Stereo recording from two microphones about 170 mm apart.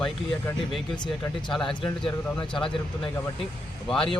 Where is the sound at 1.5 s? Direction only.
Centre (ahead or behind).